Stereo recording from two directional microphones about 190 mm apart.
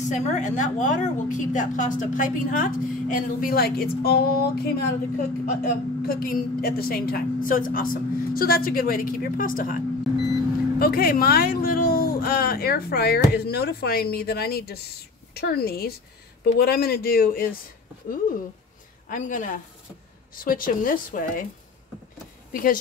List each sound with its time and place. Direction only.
0.0 s a woman's voice: 40° left (ahead or behind)
19.0 s a woman's voice: 45° left (ahead or behind)
22.5 s speech: 50° left (ahead or behind)